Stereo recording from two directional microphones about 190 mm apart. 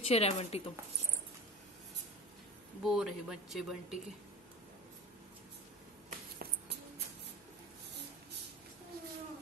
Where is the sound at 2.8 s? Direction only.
Centre (ahead or behind).